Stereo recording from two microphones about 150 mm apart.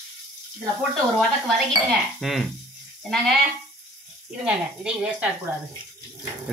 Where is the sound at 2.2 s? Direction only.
Centre (ahead or behind).